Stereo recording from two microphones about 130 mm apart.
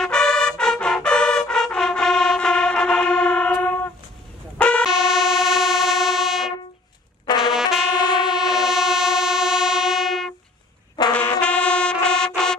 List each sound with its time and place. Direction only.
0.0 s brass instrument: 5° left (ahead or behind)
4.6 s a sound: 10° left (ahead or behind)
4.8 s train: 5° right (ahead or behind)
7.2 s trumpet: 35° left (ahead or behind)
8.0 s train: 35° left (ahead or behind)
8.6 s train: 5° right (ahead or behind)
11.0 s brass instrument: 35° left (ahead or behind)
11.4 s music: 10° left (ahead or behind)